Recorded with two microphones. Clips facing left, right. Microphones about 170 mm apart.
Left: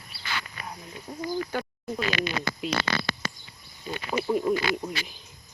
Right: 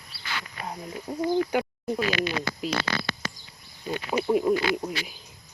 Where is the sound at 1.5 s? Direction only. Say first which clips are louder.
Right 5 dB; 15° right (ahead or behind).